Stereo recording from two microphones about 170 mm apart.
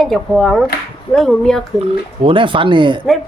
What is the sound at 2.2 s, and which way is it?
Speech, 30° right (ahead or behind).